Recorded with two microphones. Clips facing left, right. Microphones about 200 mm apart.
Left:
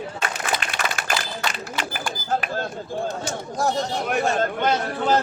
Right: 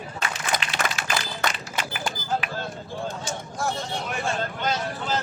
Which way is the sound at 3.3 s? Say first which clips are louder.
Left 5 dB; 40° left (ahead or behind).